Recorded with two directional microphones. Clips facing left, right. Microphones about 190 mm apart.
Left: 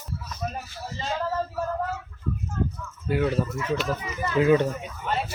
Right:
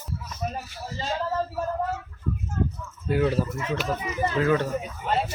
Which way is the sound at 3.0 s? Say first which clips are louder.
Right 1 dB; centre (ahead or behind).